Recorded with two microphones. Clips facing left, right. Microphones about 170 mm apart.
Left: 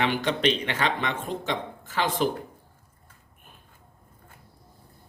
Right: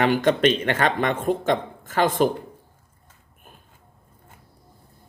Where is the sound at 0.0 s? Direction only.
45° right (ahead or behind).